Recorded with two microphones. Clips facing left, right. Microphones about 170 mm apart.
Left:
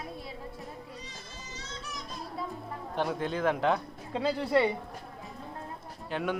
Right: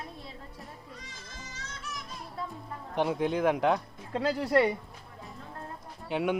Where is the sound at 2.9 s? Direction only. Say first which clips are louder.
Right 3 dB; 15° right (ahead or behind).